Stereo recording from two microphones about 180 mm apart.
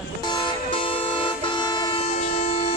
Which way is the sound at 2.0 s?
35° left (ahead or behind).